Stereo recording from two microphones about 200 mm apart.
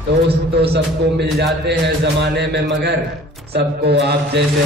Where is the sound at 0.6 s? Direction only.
55° right (ahead or behind).